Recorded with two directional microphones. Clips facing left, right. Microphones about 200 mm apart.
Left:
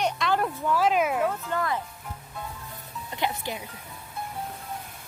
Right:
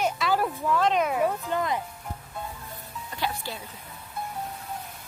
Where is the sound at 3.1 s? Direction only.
20° left (ahead or behind).